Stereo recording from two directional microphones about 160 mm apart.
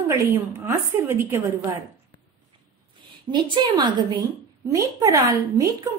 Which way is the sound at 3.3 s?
30° right (ahead or behind).